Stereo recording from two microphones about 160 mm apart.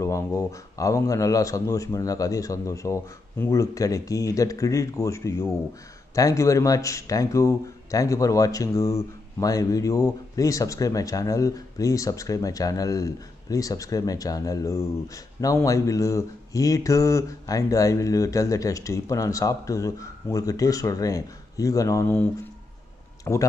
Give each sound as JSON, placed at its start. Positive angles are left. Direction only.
{"t": 0.0, "sound": "speech", "side_deg": 20}